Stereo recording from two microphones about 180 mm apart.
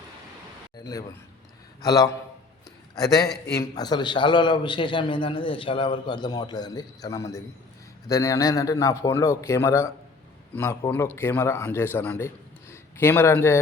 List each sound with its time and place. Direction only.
1.8 s a man's voice: 20° left (ahead or behind)
3.5 s a man's voice: 20° left (ahead or behind)